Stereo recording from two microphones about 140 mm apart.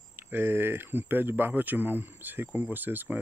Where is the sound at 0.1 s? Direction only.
15° right (ahead or behind).